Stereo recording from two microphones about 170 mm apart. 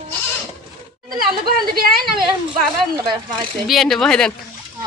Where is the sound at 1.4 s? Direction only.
60° right (ahead or behind).